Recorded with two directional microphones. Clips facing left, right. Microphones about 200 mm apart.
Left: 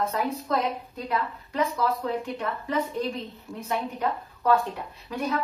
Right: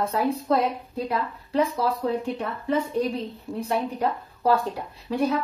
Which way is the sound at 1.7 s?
30° right (ahead or behind).